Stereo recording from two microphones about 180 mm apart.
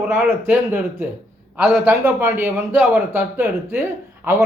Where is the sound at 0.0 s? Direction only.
10° right (ahead or behind).